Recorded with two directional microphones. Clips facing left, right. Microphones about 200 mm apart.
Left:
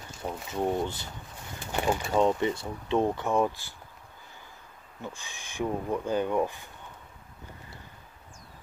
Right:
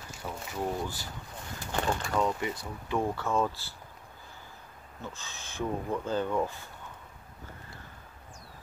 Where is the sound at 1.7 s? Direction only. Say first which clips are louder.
Left 3 dB; 10° left (ahead or behind).